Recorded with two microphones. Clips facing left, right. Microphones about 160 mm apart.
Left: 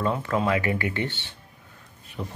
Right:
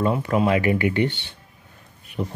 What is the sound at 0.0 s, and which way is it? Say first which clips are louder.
Speech: right 4 dB; 15° right (ahead or behind).